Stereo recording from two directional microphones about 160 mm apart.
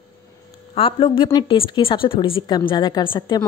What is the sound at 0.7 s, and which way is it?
Speech, 35° left (ahead or behind).